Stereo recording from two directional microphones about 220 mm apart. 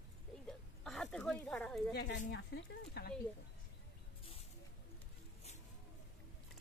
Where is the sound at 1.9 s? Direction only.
50° left (ahead or behind).